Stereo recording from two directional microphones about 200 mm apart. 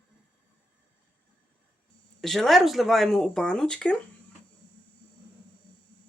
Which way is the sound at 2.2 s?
Centre (ahead or behind).